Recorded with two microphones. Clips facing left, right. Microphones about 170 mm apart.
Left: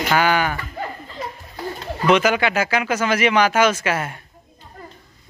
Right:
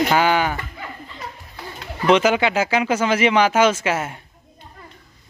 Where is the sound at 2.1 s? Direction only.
25° right (ahead or behind).